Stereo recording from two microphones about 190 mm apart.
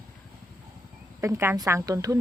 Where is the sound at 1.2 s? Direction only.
15° right (ahead or behind).